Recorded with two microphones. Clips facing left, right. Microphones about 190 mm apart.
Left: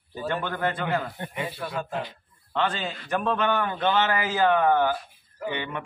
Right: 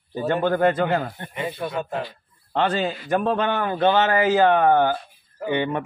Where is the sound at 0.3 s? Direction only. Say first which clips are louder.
Right 9 dB; 40° right (ahead or behind).